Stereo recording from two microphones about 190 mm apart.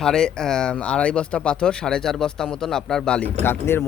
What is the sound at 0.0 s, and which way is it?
Speech, 5° left (ahead or behind).